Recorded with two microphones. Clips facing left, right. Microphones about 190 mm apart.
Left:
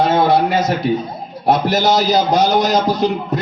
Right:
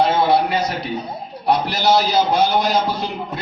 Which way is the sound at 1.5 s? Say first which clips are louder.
Left 3 dB; 45° left (ahead or behind).